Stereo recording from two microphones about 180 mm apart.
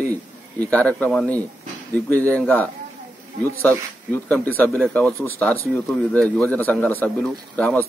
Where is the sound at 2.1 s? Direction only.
15° right (ahead or behind).